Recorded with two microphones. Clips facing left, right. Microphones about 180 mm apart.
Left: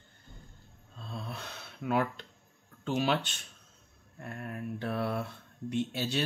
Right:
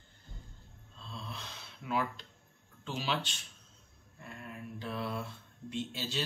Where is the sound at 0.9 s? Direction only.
55° left (ahead or behind).